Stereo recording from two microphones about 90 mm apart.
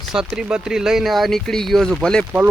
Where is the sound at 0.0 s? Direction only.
5° right (ahead or behind).